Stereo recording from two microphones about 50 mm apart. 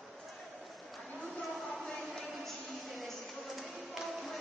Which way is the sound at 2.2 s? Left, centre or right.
Centre.